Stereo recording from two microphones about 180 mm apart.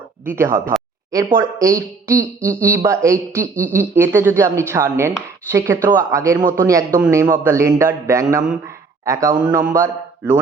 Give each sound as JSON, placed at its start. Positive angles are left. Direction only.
{"t": 0.3, "sound": "speech", "side_deg": -10}